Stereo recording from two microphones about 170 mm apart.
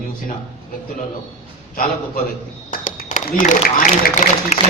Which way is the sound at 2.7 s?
55° left (ahead or behind).